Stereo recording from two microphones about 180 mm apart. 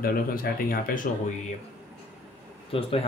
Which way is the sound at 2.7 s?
30° left (ahead or behind).